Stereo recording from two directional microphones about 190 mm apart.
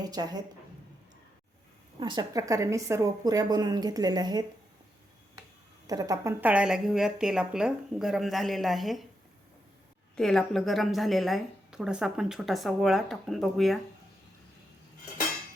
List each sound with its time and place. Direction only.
0.0 s a woman's voice: 20° right (ahead or behind)
2.0 s a woman's voice: 25° right (ahead or behind)
5.9 s a woman's voice: 20° right (ahead or behind); by 9.0 s centre (ahead or behind)
10.2 s a woman's voice: centre (ahead or behind)